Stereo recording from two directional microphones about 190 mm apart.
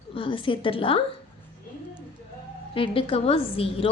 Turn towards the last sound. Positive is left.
turn(degrees=30)  # may be behind; listen again after turning